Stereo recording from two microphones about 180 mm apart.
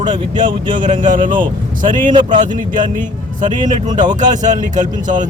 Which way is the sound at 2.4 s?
45° right (ahead or behind).